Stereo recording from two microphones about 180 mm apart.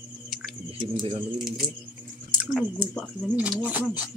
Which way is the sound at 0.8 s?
30° right (ahead or behind).